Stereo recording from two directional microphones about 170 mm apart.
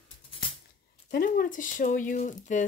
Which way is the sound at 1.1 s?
55° left (ahead or behind).